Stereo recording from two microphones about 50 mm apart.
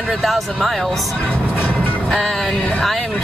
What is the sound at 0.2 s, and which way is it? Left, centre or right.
Speech, centre.